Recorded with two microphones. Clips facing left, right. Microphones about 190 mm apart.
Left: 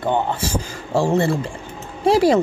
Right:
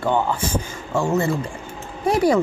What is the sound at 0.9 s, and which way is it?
Speech, 30° left (ahead or behind).